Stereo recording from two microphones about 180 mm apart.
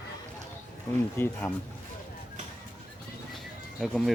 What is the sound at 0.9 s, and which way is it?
Speech, 15° left (ahead or behind).